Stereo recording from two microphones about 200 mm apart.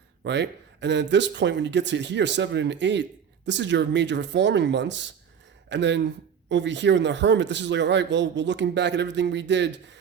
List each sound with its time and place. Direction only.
0.3 s speech: 60° right (ahead or behind)